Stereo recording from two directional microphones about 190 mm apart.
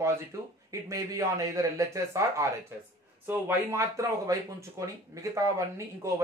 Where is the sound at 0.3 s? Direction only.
15° right (ahead or behind).